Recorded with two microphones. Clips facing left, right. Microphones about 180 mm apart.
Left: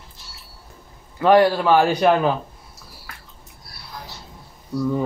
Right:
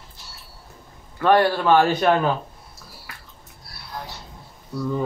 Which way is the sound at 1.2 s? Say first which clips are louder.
Left 3 dB; 15° left (ahead or behind).